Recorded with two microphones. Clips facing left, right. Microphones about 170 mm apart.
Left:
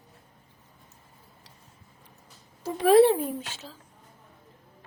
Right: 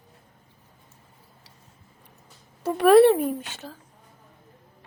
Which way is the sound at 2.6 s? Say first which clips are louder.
Right 3 dB; 65° right (ahead or behind).